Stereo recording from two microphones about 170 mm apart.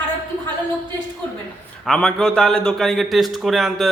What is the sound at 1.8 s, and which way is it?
A man's voice, 5° left (ahead or behind).